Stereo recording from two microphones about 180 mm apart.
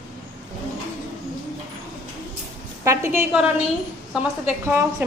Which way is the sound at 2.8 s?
15° right (ahead or behind).